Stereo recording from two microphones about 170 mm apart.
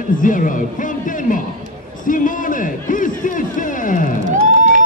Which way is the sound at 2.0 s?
50° left (ahead or behind).